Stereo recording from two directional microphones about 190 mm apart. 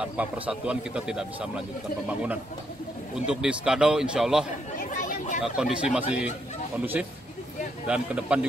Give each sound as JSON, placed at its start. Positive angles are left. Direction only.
{"t": 0.0, "sound": "a man's voice", "side_deg": -5}
{"t": 3.3, "sound": "a man's voice", "side_deg": -5}
{"t": 4.7, "sound": "chatter", "side_deg": 45}
{"t": 5.4, "sound": "a man's voice", "side_deg": -5}
{"t": 7.8, "sound": "a man's voice", "side_deg": -5}